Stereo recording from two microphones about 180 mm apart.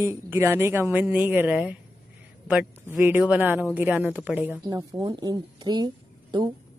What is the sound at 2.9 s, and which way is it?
Speech, 10° right (ahead or behind).